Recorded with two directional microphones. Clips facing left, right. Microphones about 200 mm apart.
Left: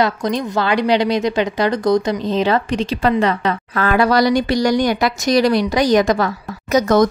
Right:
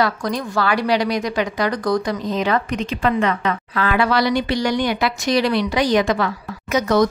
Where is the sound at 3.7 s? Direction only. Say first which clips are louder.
Left 4 dB; 45° left (ahead or behind).